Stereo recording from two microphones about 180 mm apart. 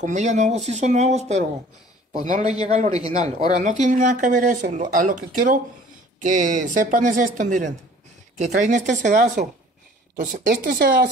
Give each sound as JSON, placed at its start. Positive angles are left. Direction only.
{"t": 0.0, "sound": "speech", "side_deg": -40}